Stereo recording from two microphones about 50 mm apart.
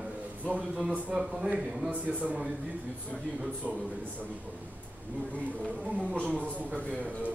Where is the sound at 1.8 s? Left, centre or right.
Right.